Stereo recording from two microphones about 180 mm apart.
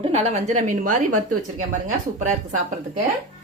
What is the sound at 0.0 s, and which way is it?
A woman's voice, 35° right (ahead or behind).